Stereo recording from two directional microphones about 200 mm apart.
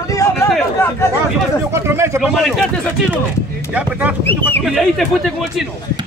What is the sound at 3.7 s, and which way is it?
Speech, 5° right (ahead or behind).